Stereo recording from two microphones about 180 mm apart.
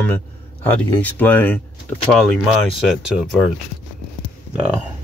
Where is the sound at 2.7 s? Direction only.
Centre (ahead or behind).